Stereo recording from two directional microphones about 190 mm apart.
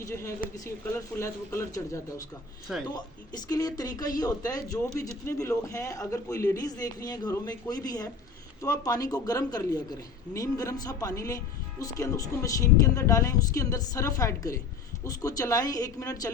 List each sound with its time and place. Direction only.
0.0 s a man's voice: 15° left (ahead or behind)